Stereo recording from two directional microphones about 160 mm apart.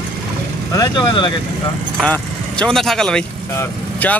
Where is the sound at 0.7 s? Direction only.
30° left (ahead or behind).